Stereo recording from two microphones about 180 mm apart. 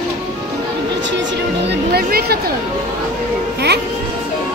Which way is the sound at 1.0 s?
80° right.